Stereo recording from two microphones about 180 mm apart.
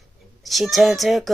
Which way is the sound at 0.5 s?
Centre (ahead or behind).